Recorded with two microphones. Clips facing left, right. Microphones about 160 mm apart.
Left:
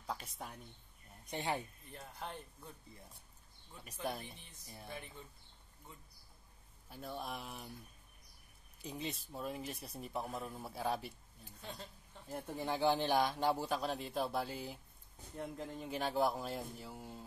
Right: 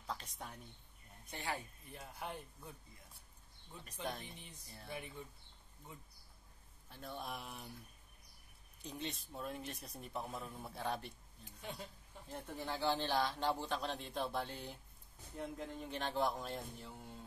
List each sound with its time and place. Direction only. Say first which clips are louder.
0.0 s a sound: left 2 dB; 10° left (ahead or behind)
1.2 s speech: left 5 dB; 20° left (ahead or behind)
1.9 s speech: even; 10° right (ahead or behind)
4.0 s speech: left 3 dB; 10° left (ahead or behind)
6.9 s speech: left 2 dB; 5° left (ahead or behind)
8.8 s speech: left 2 dB; 5° left (ahead or behind)
12.3 s speech: left 4 dB; 10° left (ahead or behind)